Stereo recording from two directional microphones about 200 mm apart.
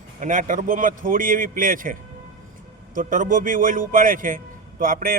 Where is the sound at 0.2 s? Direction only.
40° right (ahead or behind).